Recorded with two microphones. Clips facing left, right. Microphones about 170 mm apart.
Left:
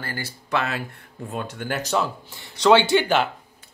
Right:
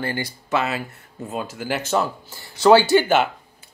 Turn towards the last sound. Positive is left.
turn(degrees=-5)  # may be behind; listen again after turning